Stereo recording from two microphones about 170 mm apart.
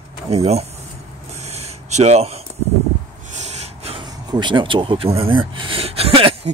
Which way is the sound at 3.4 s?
40° right (ahead or behind).